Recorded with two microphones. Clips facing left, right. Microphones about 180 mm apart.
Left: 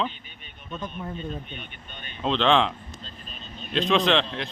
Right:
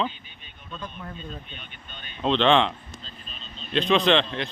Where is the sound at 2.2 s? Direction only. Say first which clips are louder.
Right 1 dB; centre (ahead or behind).